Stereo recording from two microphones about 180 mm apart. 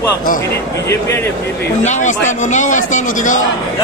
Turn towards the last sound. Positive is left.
turn(degrees=45)  # may be behind; listen again after turning